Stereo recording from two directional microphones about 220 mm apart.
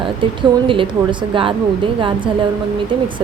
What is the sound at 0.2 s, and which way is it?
Speech, 25° right (ahead or behind).